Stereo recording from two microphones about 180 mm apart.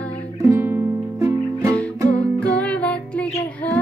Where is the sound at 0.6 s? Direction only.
15° right (ahead or behind).